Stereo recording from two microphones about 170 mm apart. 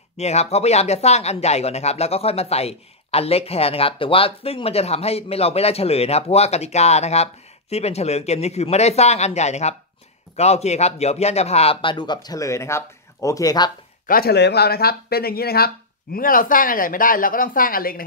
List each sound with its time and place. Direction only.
0.2 s speech: 40° left (ahead or behind); by 13.7 s 20° left (ahead or behind)
14.0 s speech: 60° left (ahead or behind)